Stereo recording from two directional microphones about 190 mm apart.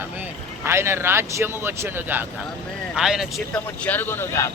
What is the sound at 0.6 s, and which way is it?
Speech, 15° right (ahead or behind).